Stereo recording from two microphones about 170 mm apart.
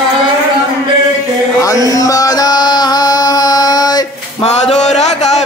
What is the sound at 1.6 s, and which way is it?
Chant, 20° left (ahead or behind).